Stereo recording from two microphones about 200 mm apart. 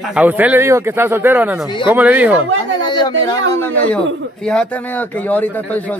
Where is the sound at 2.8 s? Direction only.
20° left (ahead or behind).